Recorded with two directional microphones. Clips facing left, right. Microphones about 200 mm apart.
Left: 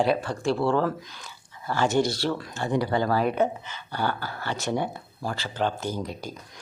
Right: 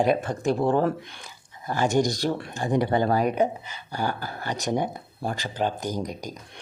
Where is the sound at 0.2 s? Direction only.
20° right (ahead or behind).